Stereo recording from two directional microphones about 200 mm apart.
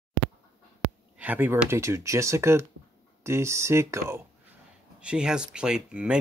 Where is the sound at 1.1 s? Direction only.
5° right (ahead or behind).